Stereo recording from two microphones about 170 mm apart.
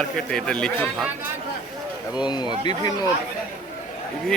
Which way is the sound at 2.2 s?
25° left (ahead or behind).